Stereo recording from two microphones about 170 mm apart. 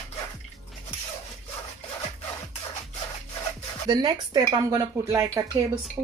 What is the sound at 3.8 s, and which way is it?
Speech, 25° right (ahead or behind).